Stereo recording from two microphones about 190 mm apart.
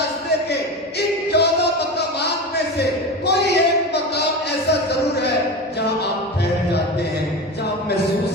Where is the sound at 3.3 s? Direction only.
60° left (ahead or behind).